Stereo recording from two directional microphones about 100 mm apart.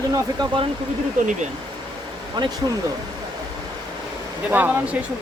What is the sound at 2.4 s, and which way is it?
Speech, 50° right (ahead or behind).